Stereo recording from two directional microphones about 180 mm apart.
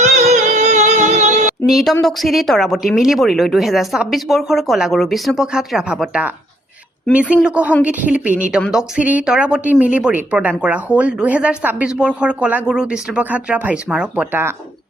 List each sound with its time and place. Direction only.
0.2 s music: 40° right (ahead or behind)
1.6 s a woman's voice: centre (ahead or behind)